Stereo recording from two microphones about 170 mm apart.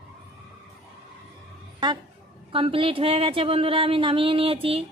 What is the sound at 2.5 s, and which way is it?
Speech, 30° right (ahead or behind).